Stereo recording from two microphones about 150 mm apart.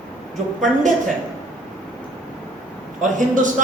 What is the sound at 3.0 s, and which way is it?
Speech, 60° right (ahead or behind).